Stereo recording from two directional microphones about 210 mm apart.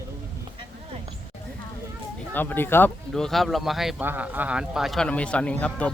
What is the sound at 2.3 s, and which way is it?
Speech, 10° left (ahead or behind).